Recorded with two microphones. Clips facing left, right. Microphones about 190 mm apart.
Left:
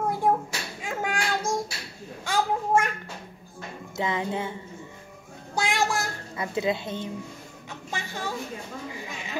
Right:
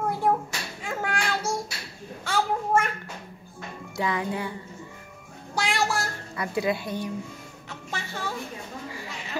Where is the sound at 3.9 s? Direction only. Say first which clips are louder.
Even; 20° left (ahead or behind).